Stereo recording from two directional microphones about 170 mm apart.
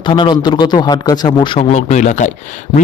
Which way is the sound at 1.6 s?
40° left (ahead or behind).